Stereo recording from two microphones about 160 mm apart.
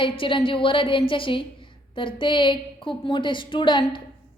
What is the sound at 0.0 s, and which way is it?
A woman's voice, 30° left (ahead or behind).